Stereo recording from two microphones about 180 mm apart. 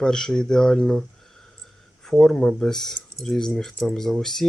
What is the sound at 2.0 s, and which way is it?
Speech, centre (ahead or behind).